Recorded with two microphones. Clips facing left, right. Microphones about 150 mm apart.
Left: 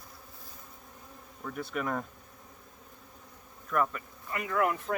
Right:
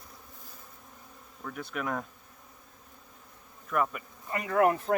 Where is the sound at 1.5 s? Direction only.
Centre (ahead or behind).